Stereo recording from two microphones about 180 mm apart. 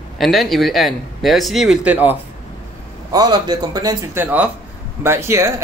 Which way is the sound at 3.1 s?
20° right (ahead or behind).